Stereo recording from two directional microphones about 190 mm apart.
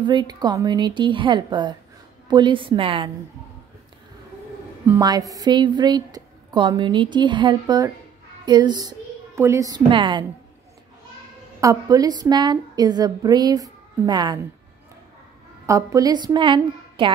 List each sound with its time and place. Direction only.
0.0 s a woman's voice: 20° right (ahead or behind)
4.8 s a woman's voice: 15° right (ahead or behind)
11.6 s a woman's voice: 15° right (ahead or behind)
15.6 s a woman's voice: 15° right (ahead or behind)